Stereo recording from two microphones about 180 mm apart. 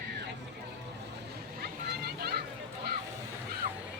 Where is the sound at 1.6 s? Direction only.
60° right (ahead or behind).